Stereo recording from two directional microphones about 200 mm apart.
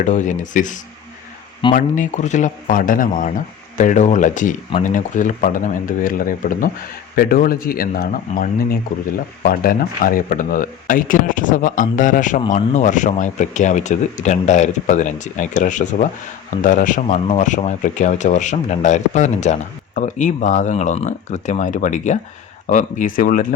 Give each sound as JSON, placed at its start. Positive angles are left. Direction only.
{"t": 0.0, "sound": "speech", "side_deg": 40}